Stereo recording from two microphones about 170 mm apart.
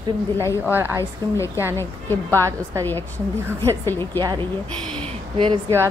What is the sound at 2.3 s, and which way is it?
Speech, 20° right (ahead or behind).